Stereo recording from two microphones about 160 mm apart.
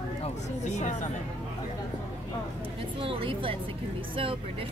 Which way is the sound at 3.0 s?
35° right (ahead or behind).